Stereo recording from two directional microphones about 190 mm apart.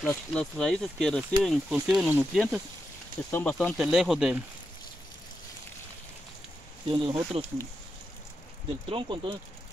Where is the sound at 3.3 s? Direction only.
10° left (ahead or behind).